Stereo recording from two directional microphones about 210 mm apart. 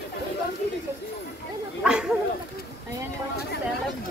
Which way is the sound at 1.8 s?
5° right (ahead or behind).